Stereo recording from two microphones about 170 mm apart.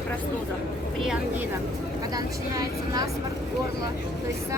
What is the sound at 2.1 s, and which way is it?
Speech, 20° right (ahead or behind).